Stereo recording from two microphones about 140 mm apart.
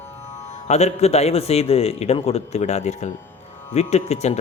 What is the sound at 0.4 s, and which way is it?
Speech, 50° left (ahead or behind).